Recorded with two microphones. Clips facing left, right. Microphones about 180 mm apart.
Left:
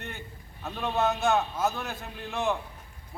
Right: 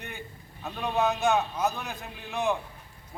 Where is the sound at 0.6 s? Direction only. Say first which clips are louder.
Even; centre (ahead or behind).